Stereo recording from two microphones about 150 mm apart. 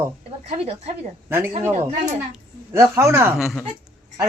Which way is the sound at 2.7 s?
20° right (ahead or behind).